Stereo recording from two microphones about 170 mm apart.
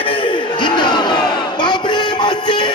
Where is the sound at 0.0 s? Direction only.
30° left (ahead or behind).